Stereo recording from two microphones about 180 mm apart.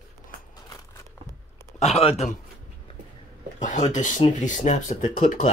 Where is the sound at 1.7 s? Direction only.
35° left (ahead or behind).